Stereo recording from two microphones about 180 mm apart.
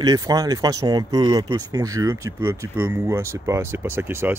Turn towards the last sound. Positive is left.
turn(degrees=-15)  # may be behind; listen again after turning